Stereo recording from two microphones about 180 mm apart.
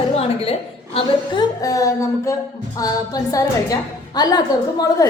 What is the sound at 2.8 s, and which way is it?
A woman's voice, 20° left (ahead or behind).